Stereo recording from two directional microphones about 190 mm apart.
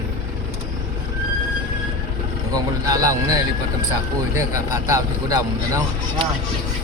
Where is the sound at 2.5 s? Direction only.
20° right (ahead or behind).